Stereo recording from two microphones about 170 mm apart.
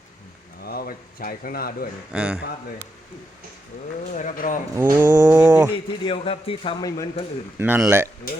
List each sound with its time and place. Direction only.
0.6 s a sound: 60° left (ahead or behind)
2.1 s a man's voice: 5° right (ahead or behind)
4.1 s a man's voice: 45° left (ahead or behind)
4.8 s roaring cats: 10° right (ahead or behind)
6.1 s speech: 35° left (ahead or behind)
7.6 s roaring cats: 10° right (ahead or behind)